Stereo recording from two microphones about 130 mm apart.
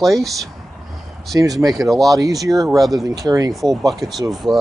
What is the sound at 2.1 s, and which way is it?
Speech, 25° right (ahead or behind).